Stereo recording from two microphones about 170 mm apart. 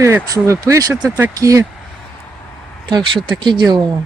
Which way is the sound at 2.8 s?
25° right (ahead or behind).